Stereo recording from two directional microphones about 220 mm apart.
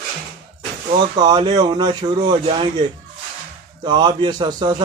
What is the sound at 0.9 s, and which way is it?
Speech, 20° right (ahead or behind).